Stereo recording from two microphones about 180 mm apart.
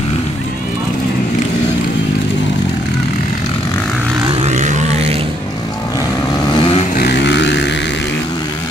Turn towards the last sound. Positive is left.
turn(degrees=75)  # may be behind; listen again after turning